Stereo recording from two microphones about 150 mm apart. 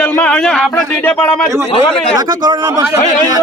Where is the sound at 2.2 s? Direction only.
25° right (ahead or behind).